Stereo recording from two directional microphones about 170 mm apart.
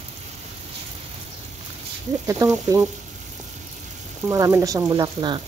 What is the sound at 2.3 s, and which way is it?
Speech, 20° right (ahead or behind).